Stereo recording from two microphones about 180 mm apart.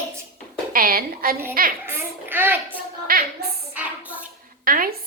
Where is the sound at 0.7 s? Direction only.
55° right (ahead or behind).